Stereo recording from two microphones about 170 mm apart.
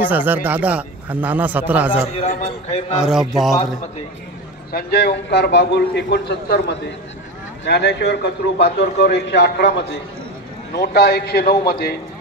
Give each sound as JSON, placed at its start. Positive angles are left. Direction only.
{"t": 0.0, "sound": "a man's voice", "side_deg": -10}
{"t": 2.1, "sound": "a man's voice", "side_deg": 40}
{"t": 3.0, "sound": "a man's voice", "side_deg": 0}
{"t": 4.7, "sound": "a man's voice", "side_deg": 70}
{"t": 7.6, "sound": "a man's voice", "side_deg": 85}
{"t": 10.7, "sound": "a man's voice", "side_deg": 70}